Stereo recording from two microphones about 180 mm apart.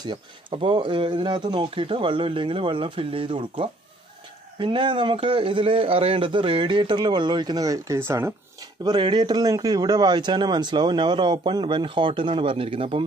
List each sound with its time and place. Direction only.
0.0 s a man's voice: 25° right (ahead or behind)
8.8 s a man's voice: 25° right (ahead or behind)